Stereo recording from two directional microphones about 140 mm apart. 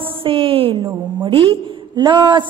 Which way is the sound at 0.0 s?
40° right (ahead or behind).